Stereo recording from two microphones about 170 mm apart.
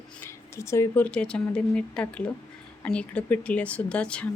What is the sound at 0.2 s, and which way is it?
Speech, 15° left (ahead or behind).